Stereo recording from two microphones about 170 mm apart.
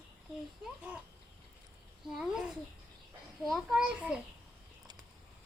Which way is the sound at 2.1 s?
5° right (ahead or behind).